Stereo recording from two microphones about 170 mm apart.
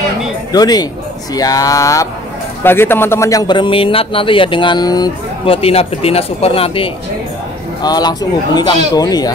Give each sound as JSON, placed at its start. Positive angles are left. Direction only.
{"t": 0.5, "sound": "a man's voice", "side_deg": 25}